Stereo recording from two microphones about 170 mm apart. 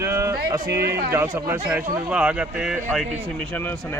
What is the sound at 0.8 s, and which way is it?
Speech, 65° right (ahead or behind).